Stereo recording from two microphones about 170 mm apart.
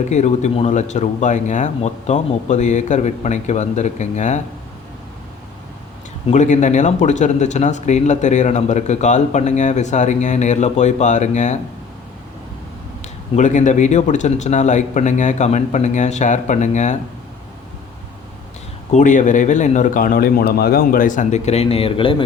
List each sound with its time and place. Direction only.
0.1 s speech: 45° left (ahead or behind)
6.2 s speech: 45° left (ahead or behind)
13.3 s speech: 45° left (ahead or behind)
18.9 s speech: 45° left (ahead or behind); by 22.2 s 30° left (ahead or behind)